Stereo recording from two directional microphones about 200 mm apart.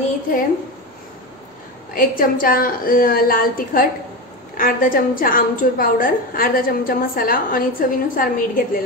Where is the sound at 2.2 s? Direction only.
45° left (ahead or behind).